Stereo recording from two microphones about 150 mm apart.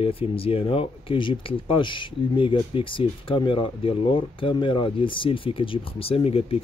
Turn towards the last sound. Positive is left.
turn(degrees=40)  # may be behind; listen again after turning